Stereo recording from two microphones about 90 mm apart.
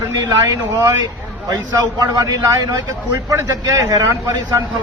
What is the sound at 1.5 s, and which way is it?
A man's voice, 45° right (ahead or behind).